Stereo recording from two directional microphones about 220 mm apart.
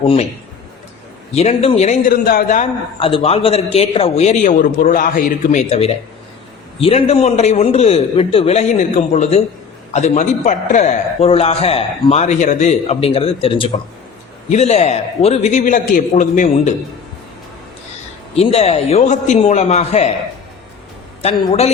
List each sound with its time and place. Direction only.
0.0 s a man's voice: 25° left (ahead or behind)
1.3 s a man's voice: 30° left (ahead or behind)
3.0 s a man's voice: 25° left (ahead or behind)
18.3 s a man's voice: 30° left (ahead or behind)
21.2 s a man's voice: 30° left (ahead or behind)